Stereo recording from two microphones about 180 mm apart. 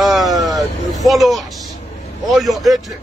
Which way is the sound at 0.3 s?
20° right (ahead or behind).